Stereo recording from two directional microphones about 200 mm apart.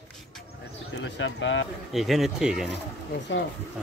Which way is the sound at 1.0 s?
65° left (ahead or behind).